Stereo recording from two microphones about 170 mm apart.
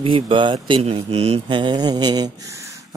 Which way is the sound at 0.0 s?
30° right (ahead or behind).